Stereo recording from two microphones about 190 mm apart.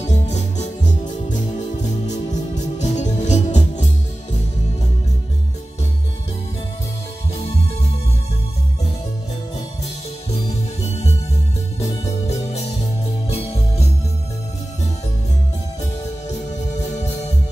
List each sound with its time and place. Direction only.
0.0 s music: 35° left (ahead or behind)
12.0 s music: 35° left (ahead or behind)